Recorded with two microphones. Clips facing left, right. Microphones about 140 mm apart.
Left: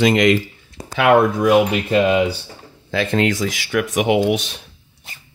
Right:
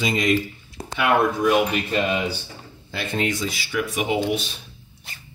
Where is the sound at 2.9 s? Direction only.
90° left.